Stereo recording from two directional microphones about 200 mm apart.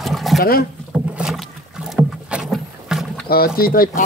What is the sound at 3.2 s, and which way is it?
Speech, 50° left (ahead or behind).